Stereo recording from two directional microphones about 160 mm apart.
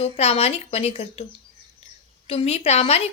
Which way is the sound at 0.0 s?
40° left (ahead or behind).